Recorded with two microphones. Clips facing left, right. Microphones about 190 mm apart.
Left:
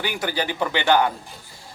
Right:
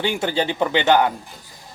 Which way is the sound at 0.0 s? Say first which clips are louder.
Right 4 dB; 25° right (ahead or behind).